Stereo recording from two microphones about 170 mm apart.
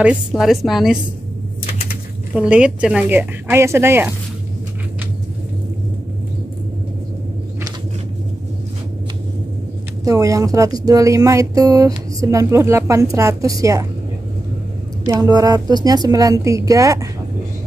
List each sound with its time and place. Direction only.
0.0 s a woman's voice: 5° right (ahead or behind)
2.3 s a woman's voice: 5° right (ahead or behind)
10.0 s speech: 20° right (ahead or behind)
15.0 s speech: 20° right (ahead or behind)